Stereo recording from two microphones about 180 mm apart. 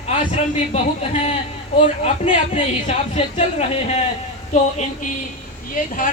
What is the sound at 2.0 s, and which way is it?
A woman's voice, 40° left (ahead or behind).